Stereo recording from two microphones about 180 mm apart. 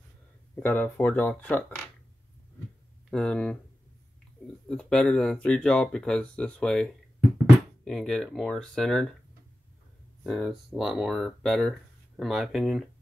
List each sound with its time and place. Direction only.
0.6 s speech: 10° left (ahead or behind)
3.1 s speech: 5° left (ahead or behind)
4.6 s speech: 5° left (ahead or behind)
10.2 s speech: centre (ahead or behind)